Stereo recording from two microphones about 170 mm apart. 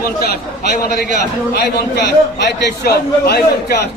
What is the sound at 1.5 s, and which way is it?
A man's voice, 80° left.